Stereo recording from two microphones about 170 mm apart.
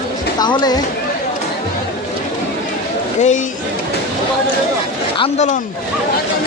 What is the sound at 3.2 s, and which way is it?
Speech, 45° left (ahead or behind).